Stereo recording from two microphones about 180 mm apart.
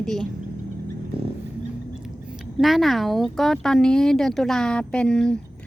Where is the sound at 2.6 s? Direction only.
Centre (ahead or behind).